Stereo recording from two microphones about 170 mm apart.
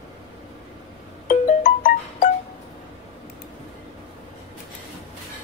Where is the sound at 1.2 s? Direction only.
55° left (ahead or behind).